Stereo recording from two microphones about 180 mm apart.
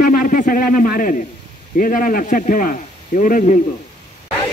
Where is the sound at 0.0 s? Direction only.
50° left (ahead or behind).